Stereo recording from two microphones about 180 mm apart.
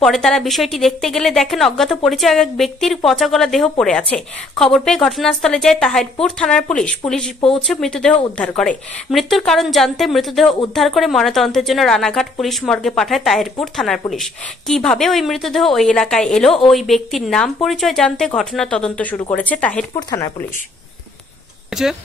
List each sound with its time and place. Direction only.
0.0 s a woman's voice: centre (ahead or behind)
20.0 s speech: 20° left (ahead or behind)